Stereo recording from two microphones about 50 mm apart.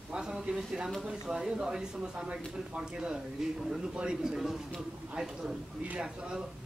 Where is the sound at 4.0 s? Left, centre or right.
Centre.